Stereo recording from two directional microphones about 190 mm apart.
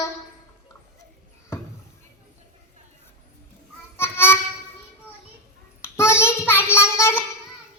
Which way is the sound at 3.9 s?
10° left (ahead or behind).